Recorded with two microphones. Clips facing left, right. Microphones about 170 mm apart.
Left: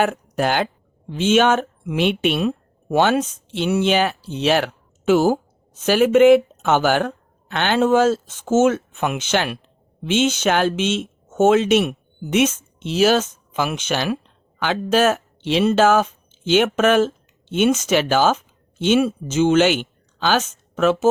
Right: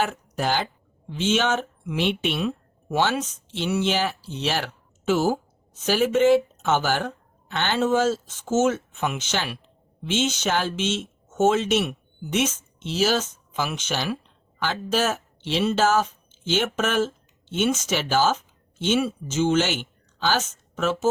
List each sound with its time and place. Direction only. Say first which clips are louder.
0.0 s speech: left 6 dB; 60° left (ahead or behind)